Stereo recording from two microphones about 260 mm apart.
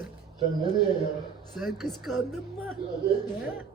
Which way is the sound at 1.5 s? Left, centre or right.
Centre.